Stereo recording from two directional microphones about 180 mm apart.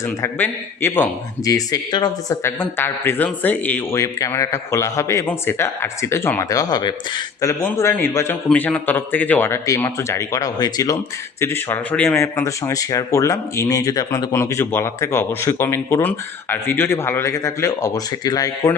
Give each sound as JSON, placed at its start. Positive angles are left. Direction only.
{"t": 0.2, "sound": "speech", "side_deg": 10}